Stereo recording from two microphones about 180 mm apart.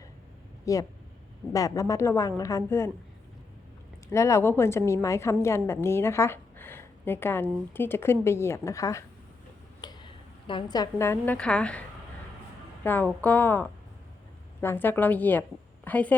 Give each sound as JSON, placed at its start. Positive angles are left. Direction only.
{"t": 0.6, "sound": "a woman's voice", "side_deg": 20}
{"t": 4.1, "sound": "a woman's voice", "side_deg": 15}
{"t": 12.8, "sound": "a woman's voice", "side_deg": 10}